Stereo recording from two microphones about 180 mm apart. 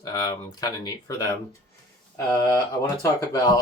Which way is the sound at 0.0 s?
20° left (ahead or behind).